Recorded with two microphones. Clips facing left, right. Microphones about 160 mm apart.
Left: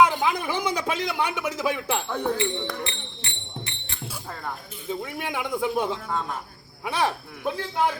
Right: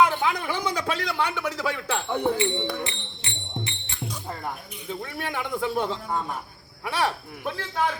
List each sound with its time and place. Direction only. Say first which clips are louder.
0.0 s speech: left 1 dB; 15° left (ahead or behind)
2.0 s speech: right 5 dB; 15° right (ahead or behind)
5.0 s a man's voice: left 1 dB; 15° left (ahead or behind)